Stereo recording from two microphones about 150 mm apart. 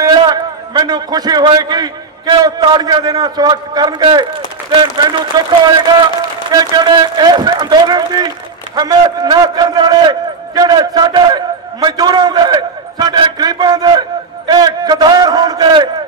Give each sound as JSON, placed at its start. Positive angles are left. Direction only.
{"t": 0.0, "sound": "a man's voice", "side_deg": -30}
{"t": 6.6, "sound": "a man's voice", "side_deg": -30}